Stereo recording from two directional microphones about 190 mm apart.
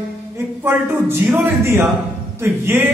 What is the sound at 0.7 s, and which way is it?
A woman's voice, 10° right (ahead or behind).